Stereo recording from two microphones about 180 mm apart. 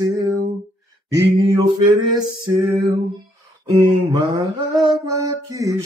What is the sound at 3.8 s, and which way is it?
Music, 15° right (ahead or behind).